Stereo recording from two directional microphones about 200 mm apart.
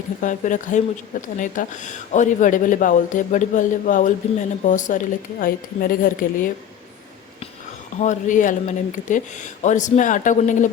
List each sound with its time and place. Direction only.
0.2 s speech: 40° left (ahead or behind)
7.9 s speech: 35° left (ahead or behind)